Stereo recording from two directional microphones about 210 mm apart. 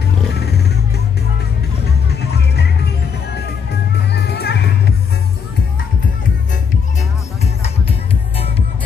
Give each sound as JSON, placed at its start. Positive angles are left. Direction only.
{"t": 1.9, "sound": "music", "side_deg": 50}
{"t": 3.9, "sound": "music", "side_deg": 50}